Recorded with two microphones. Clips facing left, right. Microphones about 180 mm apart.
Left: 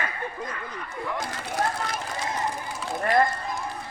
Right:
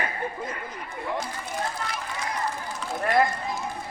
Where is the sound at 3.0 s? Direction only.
Centre (ahead or behind).